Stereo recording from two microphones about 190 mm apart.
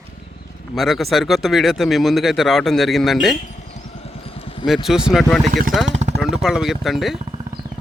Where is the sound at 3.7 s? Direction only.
30° left (ahead or behind).